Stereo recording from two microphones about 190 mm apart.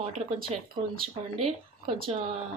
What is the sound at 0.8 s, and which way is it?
Speech, 40° right (ahead or behind).